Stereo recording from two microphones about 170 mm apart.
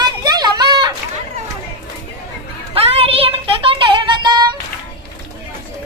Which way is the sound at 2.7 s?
35° right (ahead or behind).